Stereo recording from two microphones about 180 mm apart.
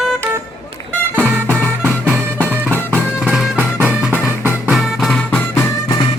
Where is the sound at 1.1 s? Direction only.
10° right (ahead or behind).